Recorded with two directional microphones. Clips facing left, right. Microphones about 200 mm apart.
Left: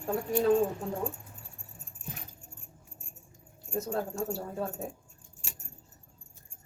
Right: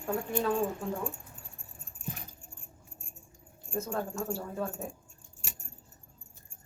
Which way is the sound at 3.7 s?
35° left (ahead or behind).